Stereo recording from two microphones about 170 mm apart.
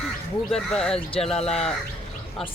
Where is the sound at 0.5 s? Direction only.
5° left (ahead or behind).